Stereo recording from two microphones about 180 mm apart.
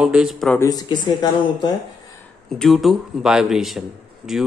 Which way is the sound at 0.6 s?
20° left (ahead or behind).